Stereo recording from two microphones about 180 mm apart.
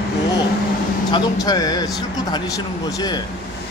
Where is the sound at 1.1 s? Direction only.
20° left (ahead or behind).